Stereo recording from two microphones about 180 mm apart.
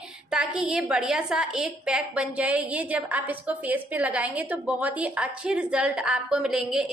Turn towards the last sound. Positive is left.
turn(degrees=-5)  # may be behind; listen again after turning